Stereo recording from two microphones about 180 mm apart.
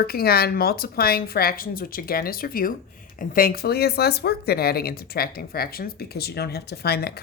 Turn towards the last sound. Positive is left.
turn(degrees=60)  # may be behind; listen again after turning